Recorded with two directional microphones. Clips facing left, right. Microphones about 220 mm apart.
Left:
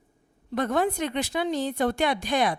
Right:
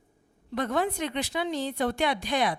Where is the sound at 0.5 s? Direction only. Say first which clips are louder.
Left 3 dB; 45° left (ahead or behind).